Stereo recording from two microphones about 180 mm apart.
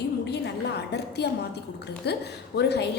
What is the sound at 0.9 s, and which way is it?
A woman's voice, 65° left (ahead or behind).